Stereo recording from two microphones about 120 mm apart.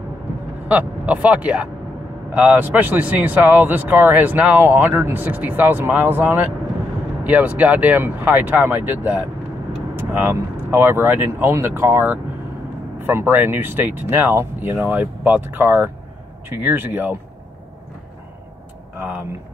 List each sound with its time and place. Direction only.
0.7 s speech: 10° right (ahead or behind)
18.9 s speech: 15° right (ahead or behind)